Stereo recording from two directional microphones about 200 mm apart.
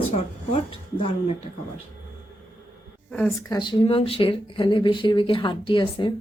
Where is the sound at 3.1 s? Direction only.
10° left (ahead or behind).